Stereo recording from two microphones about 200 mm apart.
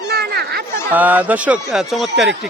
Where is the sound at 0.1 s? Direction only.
55° right (ahead or behind).